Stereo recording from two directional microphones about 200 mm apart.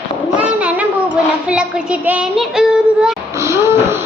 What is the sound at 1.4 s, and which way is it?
Child singing, 5° right (ahead or behind).